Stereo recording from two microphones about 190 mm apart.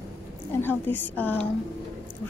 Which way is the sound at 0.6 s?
10° left (ahead or behind).